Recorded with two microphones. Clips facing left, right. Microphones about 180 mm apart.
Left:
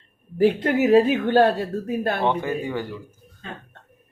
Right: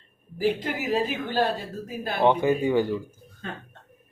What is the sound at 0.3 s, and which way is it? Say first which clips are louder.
Speech: left 7 dB; 60° left (ahead or behind).